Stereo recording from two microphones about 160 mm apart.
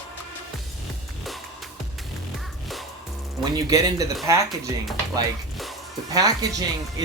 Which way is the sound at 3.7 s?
20° right (ahead or behind).